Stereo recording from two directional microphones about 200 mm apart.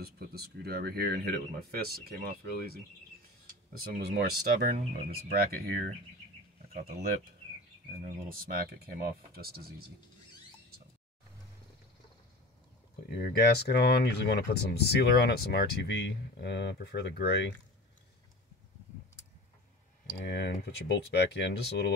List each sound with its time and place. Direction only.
0.0 s speech: 50° right (ahead or behind)
4.0 s speech: 50° right (ahead or behind)
8.1 s speech: 45° right (ahead or behind)
13.2 s speech: 55° left (ahead or behind)
20.2 s speech: 55° left (ahead or behind)